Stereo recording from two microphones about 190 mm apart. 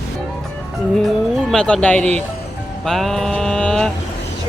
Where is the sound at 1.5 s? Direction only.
5° left (ahead or behind).